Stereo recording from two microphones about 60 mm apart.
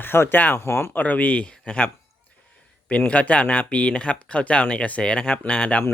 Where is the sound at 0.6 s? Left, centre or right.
Left.